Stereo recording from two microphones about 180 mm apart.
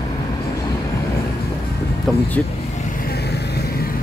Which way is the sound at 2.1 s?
5° left (ahead or behind).